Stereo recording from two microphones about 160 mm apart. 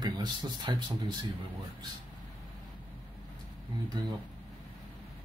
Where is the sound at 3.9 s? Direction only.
25° right (ahead or behind).